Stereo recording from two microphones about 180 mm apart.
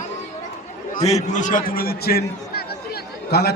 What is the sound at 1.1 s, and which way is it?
A man's voice, 45° left (ahead or behind).